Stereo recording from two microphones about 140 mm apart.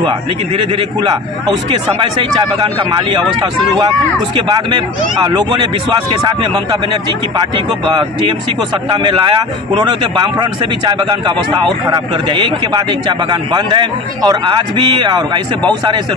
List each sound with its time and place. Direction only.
0.0 s a man's voice: 40° right (ahead or behind)
8.8 s a man's voice: 35° right (ahead or behind)